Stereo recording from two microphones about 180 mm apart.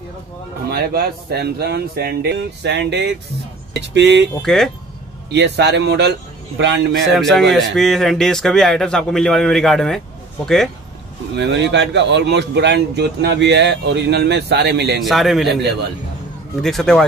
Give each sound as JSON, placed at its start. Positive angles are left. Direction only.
{"t": 0.7, "sound": "speech", "side_deg": -60}
{"t": 4.4, "sound": "a man's voice", "side_deg": 0}
{"t": 5.3, "sound": "speech", "side_deg": -70}
{"t": 7.1, "sound": "a man's voice", "side_deg": 0}
{"t": 11.3, "sound": "speech", "side_deg": -75}
{"t": 15.0, "sound": "a man's voice", "side_deg": 0}
{"t": 16.6, "sound": "a man's voice", "side_deg": 5}